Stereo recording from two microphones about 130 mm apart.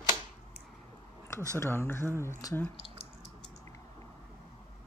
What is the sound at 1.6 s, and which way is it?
Speech, 20° left (ahead or behind).